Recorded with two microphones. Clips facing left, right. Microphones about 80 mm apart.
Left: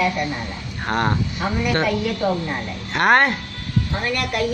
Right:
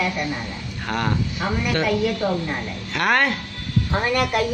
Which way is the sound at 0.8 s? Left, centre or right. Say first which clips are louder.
Left 3 dB; left.